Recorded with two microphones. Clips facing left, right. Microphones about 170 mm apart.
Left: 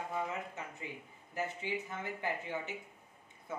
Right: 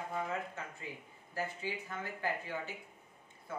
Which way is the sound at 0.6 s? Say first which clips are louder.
Even; 20° left (ahead or behind).